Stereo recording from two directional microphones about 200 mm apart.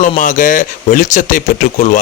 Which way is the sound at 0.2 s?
40° left (ahead or behind).